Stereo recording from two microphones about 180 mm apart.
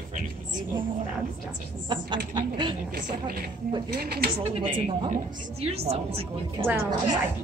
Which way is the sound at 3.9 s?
60° right (ahead or behind).